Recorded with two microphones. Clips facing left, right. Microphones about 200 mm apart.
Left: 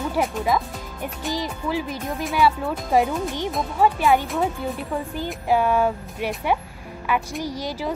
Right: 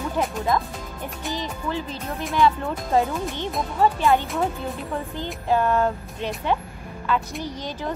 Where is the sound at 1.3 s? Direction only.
10° left (ahead or behind).